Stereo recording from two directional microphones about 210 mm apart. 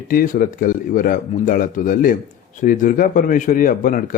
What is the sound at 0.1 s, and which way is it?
Speech, 40° left (ahead or behind).